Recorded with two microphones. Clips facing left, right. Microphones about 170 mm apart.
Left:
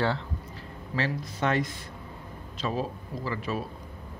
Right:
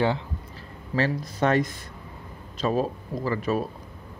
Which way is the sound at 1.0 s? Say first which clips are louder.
Right 5 dB; 40° right (ahead or behind).